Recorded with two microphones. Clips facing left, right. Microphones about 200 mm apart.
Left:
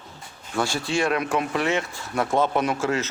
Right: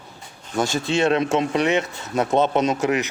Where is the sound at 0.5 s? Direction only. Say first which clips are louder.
Right 3 dB; 20° right (ahead or behind).